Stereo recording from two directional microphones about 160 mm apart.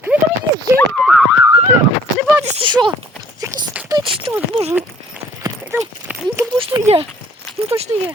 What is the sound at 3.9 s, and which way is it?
Clip-clop, 30° right (ahead or behind).